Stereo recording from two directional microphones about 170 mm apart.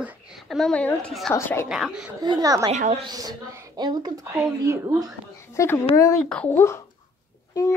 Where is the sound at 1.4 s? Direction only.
15° left (ahead or behind).